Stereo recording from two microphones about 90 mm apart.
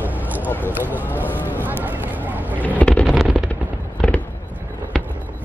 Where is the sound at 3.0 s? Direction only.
5° right (ahead or behind).